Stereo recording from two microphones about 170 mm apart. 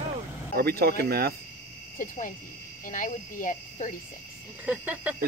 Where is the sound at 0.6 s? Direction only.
65° right (ahead or behind).